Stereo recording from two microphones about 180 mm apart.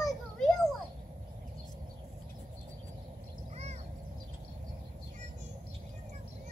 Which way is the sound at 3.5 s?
35° right (ahead or behind).